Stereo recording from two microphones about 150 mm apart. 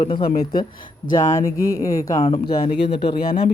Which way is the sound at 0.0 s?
35° left (ahead or behind).